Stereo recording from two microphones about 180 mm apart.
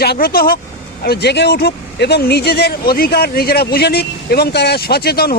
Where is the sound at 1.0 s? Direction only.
65° left (ahead or behind).